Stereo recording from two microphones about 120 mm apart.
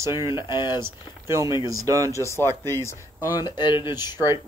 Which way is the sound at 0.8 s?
20° right (ahead or behind).